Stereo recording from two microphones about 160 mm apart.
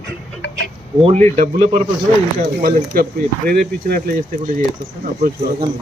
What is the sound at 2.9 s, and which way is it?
Speech, 65° right (ahead or behind).